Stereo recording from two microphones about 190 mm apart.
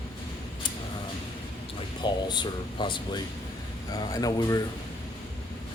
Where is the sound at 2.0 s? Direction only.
25° left (ahead or behind).